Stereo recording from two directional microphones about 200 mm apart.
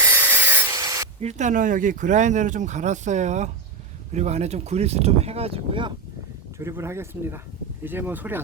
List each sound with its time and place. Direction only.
0.0 s rub: 10° right (ahead or behind)
1.2 s speech: 35° right (ahead or behind)
6.6 s speech: 15° right (ahead or behind)